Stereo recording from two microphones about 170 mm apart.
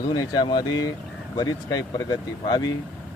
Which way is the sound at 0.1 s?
25° left (ahead or behind).